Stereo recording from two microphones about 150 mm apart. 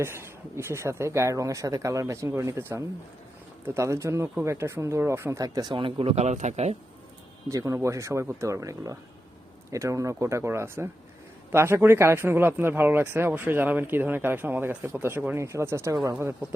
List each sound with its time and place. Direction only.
0.0 s speech: 15° right (ahead or behind); by 6.7 s 50° right (ahead or behind)
7.4 s speech: 20° right (ahead or behind)